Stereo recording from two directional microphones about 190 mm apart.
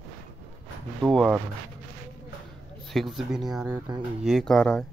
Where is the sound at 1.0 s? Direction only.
5° right (ahead or behind).